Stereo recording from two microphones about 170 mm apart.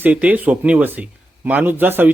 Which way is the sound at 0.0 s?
10° right (ahead or behind).